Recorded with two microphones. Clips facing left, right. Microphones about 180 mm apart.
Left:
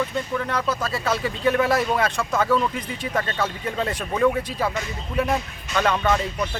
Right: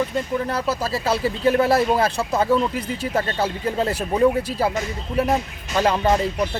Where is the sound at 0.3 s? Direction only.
30° right (ahead or behind).